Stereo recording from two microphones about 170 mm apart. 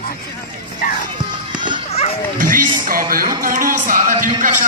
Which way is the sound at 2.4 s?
55° right (ahead or behind).